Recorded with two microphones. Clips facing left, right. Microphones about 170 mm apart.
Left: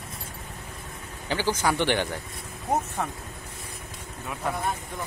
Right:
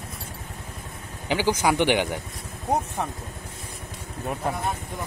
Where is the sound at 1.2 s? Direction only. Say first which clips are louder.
Right 3 dB; 15° right (ahead or behind).